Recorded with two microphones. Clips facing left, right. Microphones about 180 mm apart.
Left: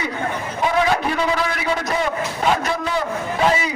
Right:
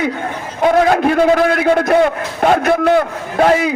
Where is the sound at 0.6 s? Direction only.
55° right (ahead or behind).